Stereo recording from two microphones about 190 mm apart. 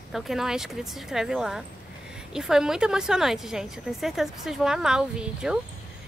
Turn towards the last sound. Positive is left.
turn(degrees=-5)  # may be behind; listen again after turning